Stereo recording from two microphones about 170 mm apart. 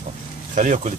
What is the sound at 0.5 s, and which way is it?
Speech, 45° right (ahead or behind).